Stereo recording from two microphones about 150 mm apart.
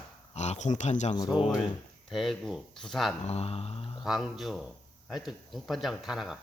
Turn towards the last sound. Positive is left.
turn(degrees=0)  # may be behind; listen again after turning